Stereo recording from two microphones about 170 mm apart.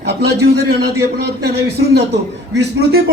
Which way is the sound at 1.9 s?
90° right.